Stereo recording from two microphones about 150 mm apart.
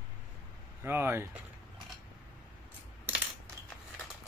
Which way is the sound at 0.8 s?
15° right (ahead or behind).